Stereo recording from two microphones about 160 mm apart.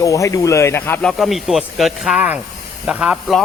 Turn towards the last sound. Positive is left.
turn(degrees=0)  # may be behind; listen again after turning